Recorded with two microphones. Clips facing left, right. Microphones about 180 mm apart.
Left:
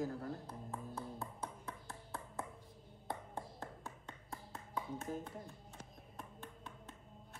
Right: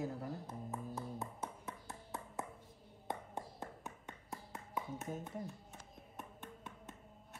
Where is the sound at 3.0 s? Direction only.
20° right (ahead or behind).